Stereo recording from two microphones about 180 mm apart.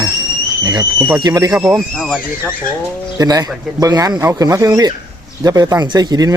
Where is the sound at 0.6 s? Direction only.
20° right (ahead or behind).